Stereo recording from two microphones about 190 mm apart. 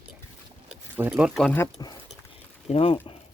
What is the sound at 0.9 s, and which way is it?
Speech, 10° right (ahead or behind).